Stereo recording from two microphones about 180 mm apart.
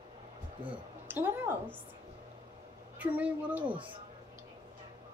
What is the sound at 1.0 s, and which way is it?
Speech, 10° right (ahead or behind).